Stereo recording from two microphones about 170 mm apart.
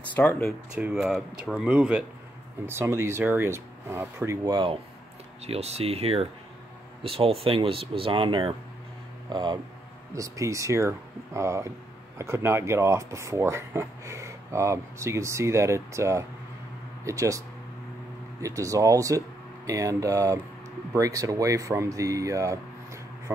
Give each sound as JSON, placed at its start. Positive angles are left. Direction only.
{"t": 0.1, "sound": "speech", "side_deg": 10}
{"t": 0.5, "sound": "speech", "side_deg": -5}
{"t": 5.4, "sound": "speech", "side_deg": -40}
{"t": 18.4, "sound": "speech", "side_deg": -20}